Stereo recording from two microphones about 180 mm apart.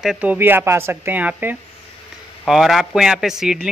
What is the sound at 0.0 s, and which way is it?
Speech, 5° right (ahead or behind).